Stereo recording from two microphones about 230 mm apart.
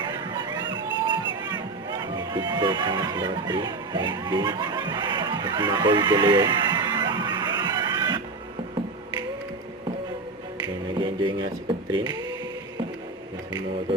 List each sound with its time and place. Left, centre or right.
0.0 s music: centre
11.0 s speech: right